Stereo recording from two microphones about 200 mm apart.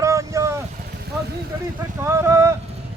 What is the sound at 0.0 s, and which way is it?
Vehicle, 15° right (ahead or behind).